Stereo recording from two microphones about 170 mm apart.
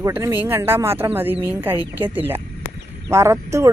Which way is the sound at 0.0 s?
15° right (ahead or behind).